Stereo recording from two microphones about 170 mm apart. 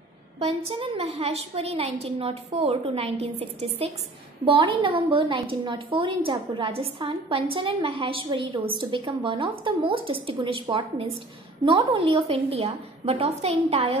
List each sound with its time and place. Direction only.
0.7 s a woman's voice: 35° right (ahead or behind)